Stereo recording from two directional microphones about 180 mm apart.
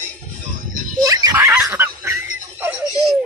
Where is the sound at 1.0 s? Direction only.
20° right (ahead or behind).